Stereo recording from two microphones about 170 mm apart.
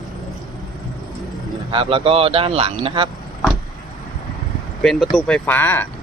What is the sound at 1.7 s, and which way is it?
Speech, 30° right (ahead or behind).